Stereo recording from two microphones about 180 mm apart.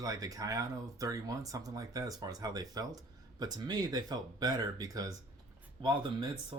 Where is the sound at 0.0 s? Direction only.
20° right (ahead or behind).